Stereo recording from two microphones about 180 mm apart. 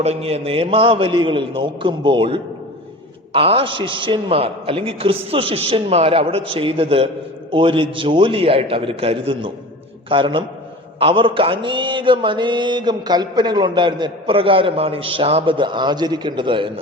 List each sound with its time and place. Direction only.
0.0 s mantra: 35° right (ahead or behind)
3.3 s a man's voice: 30° right (ahead or behind)
7.5 s mantra: 30° right (ahead or behind)